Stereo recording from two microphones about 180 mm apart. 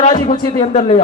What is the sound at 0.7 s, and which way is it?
Speech, 35° left (ahead or behind).